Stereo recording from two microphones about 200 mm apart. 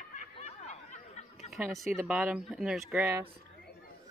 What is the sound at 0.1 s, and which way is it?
Snicker, 35° left (ahead or behind).